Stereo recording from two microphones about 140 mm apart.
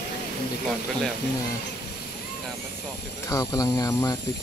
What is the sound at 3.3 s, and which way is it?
Speech, 25° left (ahead or behind).